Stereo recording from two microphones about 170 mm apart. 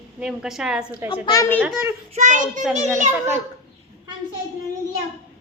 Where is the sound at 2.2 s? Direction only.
45° right (ahead or behind).